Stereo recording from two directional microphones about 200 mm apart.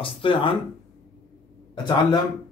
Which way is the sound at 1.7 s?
20° left (ahead or behind).